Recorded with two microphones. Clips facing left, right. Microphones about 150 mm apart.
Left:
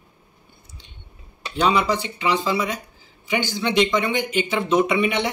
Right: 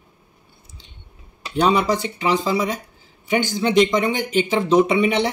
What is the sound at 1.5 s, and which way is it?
Speech, 40° right (ahead or behind).